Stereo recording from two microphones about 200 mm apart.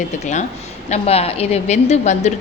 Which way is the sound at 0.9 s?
30° left (ahead or behind).